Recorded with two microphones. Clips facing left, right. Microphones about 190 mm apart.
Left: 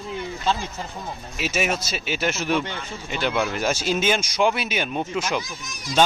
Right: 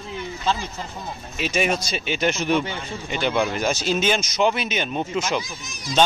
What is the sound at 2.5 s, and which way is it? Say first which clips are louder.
Speech: right 2 dB; 10° right (ahead or behind).